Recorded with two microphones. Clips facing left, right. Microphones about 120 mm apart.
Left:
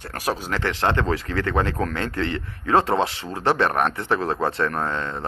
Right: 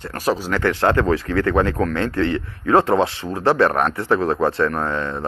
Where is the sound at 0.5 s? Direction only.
30° left (ahead or behind).